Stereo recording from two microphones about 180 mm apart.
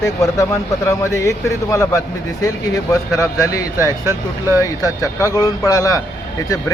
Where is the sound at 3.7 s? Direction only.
15° right (ahead or behind).